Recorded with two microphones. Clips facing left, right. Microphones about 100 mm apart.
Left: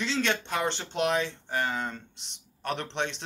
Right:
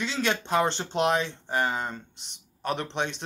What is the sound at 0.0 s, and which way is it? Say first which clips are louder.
A man's voice: even; 10° right (ahead or behind).